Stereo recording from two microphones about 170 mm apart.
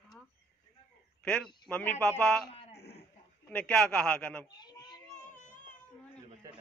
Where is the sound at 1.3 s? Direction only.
5° left (ahead or behind).